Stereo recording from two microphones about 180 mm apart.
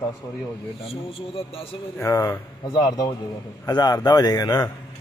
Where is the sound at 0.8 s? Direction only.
30° left (ahead or behind).